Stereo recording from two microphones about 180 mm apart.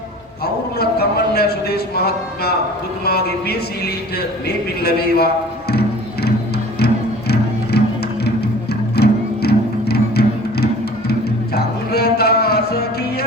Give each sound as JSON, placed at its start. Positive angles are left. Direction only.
{"t": 0.4, "sound": "a sound", "side_deg": 60}
{"t": 3.0, "sound": "speech", "side_deg": 60}
{"t": 6.7, "sound": "music", "side_deg": 60}
{"t": 9.0, "sound": "music", "side_deg": 60}